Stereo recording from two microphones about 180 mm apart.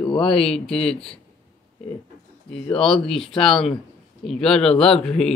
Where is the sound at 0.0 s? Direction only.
25° left (ahead or behind).